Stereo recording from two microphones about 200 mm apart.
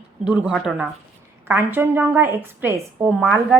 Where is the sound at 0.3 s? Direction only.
5° right (ahead or behind).